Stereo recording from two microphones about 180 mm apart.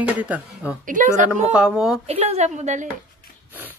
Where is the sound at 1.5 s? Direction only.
5° right (ahead or behind).